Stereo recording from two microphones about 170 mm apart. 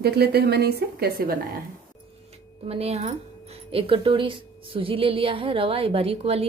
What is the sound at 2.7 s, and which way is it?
A woman's voice, 35° right (ahead or behind).